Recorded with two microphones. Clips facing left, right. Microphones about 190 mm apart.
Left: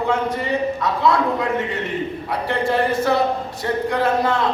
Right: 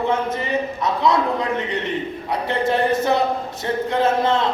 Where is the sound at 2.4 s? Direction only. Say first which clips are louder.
Even; 20° right (ahead or behind).